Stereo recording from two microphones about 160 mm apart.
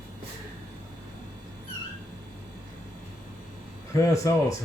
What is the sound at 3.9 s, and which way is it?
Speech, 20° left (ahead or behind).